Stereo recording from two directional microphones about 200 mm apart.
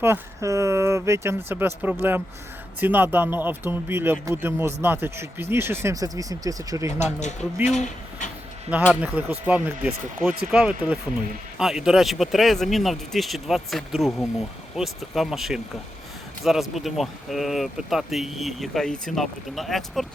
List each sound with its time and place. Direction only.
0.0 s speech: 15° right (ahead or behind)
7.0 s speech: 35° left (ahead or behind)
8.8 s speech: 5° right (ahead or behind)